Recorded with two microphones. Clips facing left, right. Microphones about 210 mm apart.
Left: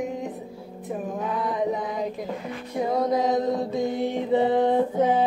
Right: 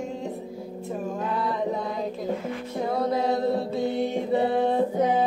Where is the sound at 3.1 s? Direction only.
15° left (ahead or behind).